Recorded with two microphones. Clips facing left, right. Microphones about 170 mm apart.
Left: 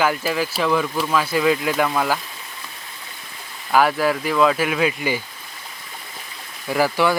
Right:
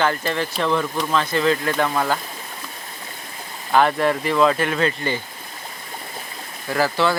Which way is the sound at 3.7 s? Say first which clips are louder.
Even; 5° left (ahead or behind).